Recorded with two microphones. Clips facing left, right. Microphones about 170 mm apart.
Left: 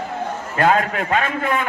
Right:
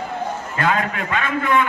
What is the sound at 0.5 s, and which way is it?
A man's voice, 45° left (ahead or behind).